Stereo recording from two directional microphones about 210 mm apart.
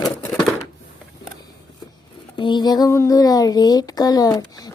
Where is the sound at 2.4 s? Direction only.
20° left (ahead or behind).